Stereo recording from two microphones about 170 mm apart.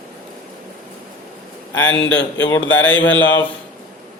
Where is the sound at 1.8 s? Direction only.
90° left.